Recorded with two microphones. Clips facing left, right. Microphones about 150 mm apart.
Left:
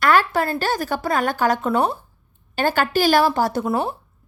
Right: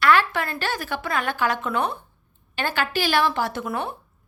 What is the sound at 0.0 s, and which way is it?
A woman's voice, 40° left (ahead or behind).